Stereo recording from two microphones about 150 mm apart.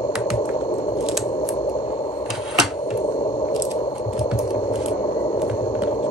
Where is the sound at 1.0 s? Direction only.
Centre (ahead or behind).